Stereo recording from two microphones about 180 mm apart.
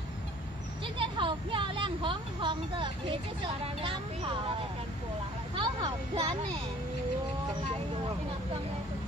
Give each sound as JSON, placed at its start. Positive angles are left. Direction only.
{"t": 0.9, "sound": "speech", "side_deg": -30}
{"t": 5.6, "sound": "speech", "side_deg": -25}